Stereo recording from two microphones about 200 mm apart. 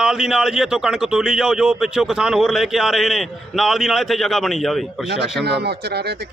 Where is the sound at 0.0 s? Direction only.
5° right (ahead or behind).